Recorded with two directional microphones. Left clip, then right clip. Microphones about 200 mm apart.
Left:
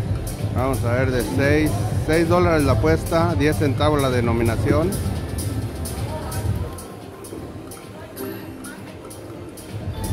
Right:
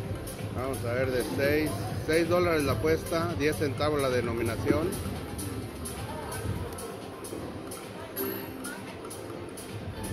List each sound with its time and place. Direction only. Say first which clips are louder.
0.6 s speech: left 8 dB; 20° left (ahead or behind)